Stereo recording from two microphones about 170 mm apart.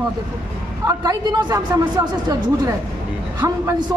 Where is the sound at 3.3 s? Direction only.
20° right (ahead or behind).